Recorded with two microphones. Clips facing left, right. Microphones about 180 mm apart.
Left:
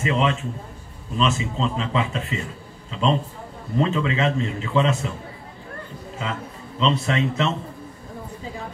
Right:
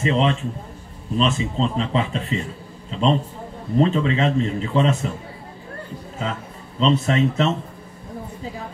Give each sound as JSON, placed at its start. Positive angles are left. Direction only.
{"t": 0.0, "sound": "a man's voice", "side_deg": -30}
{"t": 6.8, "sound": "a man's voice", "side_deg": -40}